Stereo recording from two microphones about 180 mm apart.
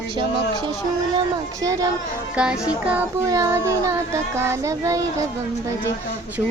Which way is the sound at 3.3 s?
15° right (ahead or behind).